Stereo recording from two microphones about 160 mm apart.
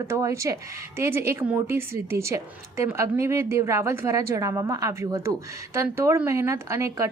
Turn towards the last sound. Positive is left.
turn(degrees=-20)  # may be behind; listen again after turning